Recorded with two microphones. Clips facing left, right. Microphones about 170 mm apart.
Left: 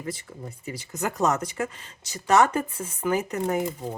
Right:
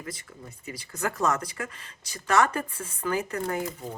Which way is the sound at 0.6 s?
25° left (ahead or behind).